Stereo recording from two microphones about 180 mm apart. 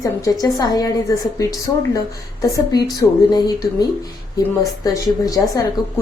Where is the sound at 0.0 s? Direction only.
20° left (ahead or behind).